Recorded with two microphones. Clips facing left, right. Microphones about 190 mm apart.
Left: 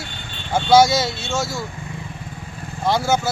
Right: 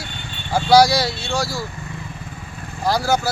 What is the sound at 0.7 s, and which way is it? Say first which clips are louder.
Speech: even; 25° left (ahead or behind).